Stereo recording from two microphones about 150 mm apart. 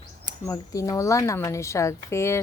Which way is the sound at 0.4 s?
20° left (ahead or behind).